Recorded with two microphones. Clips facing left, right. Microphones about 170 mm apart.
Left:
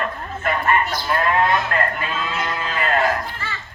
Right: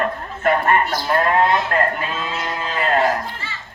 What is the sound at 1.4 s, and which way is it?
Speech, 30° right (ahead or behind).